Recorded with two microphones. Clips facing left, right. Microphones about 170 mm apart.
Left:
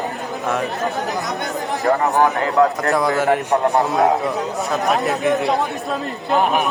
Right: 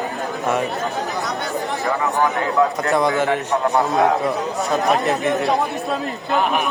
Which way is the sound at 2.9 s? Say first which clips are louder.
Even; centre (ahead or behind).